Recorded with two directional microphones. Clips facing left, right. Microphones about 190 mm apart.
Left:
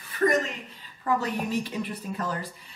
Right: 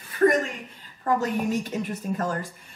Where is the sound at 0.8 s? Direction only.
45° right (ahead or behind).